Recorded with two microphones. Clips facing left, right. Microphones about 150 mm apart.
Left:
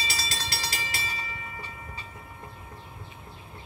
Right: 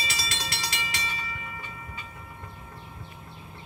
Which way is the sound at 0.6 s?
35° left (ahead or behind).